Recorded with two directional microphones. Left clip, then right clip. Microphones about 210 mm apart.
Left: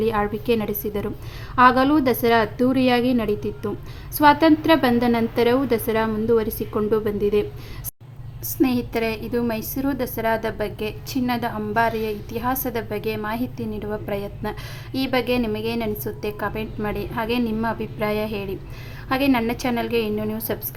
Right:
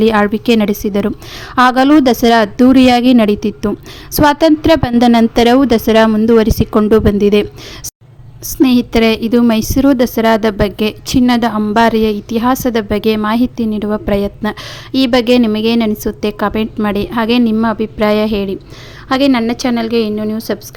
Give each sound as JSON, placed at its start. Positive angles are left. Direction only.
{"t": 0.0, "sound": "a woman's voice", "side_deg": -30}
{"t": 8.4, "sound": "a woman's voice", "side_deg": -30}